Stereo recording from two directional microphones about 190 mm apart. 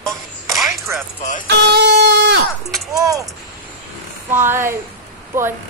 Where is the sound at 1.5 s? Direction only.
65° right (ahead or behind).